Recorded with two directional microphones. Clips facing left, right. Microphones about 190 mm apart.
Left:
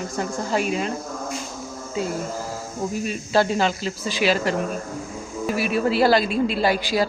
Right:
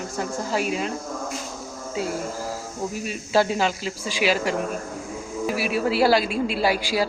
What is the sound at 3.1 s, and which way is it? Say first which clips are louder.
Speech: even; 10° right (ahead or behind).